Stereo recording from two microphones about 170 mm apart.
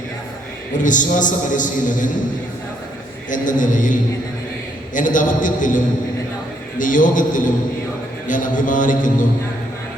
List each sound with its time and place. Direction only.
0.8 s a man's voice: 50° left (ahead or behind)
3.2 s a man's voice: 50° left (ahead or behind)